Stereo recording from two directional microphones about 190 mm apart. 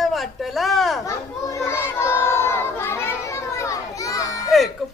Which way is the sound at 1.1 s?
15° left (ahead or behind).